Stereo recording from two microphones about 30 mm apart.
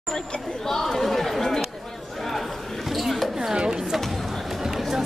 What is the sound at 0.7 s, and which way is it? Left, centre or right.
Chatter, centre.